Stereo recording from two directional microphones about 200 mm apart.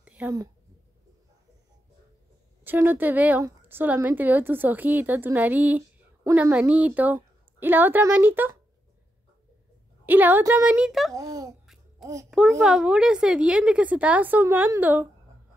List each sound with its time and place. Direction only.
0.0 s a sound: 10° right (ahead or behind)
2.6 s a woman's voice: 10° right (ahead or behind)
10.0 s a woman's voice: 10° right (ahead or behind)
11.1 s a woman's voice: 20° right (ahead or behind)
11.6 s music: centre (ahead or behind)
12.3 s a child's voice: centre (ahead or behind)